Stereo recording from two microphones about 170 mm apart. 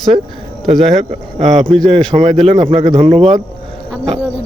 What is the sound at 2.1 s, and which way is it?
Speech, 45° right (ahead or behind).